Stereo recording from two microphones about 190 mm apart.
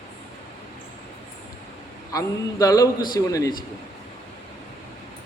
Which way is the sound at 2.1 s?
20° left (ahead or behind).